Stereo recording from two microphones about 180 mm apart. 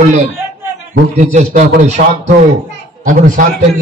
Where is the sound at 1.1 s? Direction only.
40° right (ahead or behind).